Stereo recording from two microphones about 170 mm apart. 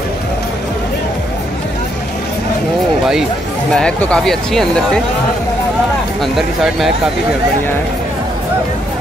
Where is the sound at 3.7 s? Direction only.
5° left (ahead or behind).